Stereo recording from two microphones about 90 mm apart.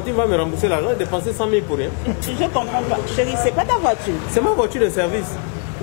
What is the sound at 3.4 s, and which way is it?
Speech, 20° left (ahead or behind).